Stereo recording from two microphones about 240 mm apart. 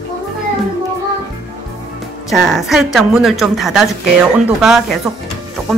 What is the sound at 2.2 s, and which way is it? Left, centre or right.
A woman's voice, centre.